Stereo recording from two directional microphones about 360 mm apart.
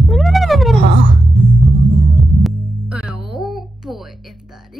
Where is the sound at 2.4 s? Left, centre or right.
Centre.